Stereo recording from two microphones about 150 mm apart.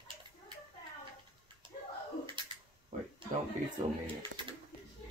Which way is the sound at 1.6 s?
35° right (ahead or behind).